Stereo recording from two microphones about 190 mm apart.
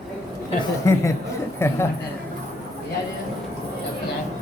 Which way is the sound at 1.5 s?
15° left (ahead or behind).